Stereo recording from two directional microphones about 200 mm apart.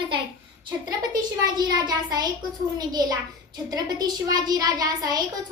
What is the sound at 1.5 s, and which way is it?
A child's voice, 20° right (ahead or behind).